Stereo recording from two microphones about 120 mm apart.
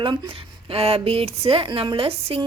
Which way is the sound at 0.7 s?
55° right (ahead or behind).